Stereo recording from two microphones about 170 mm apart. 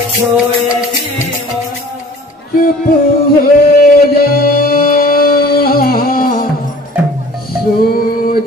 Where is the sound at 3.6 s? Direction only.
60° left (ahead or behind).